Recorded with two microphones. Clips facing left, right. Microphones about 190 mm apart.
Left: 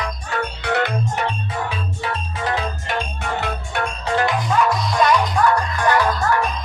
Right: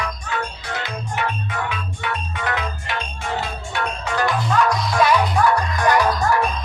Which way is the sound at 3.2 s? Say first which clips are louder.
Left 1 dB; 60° left (ahead or behind).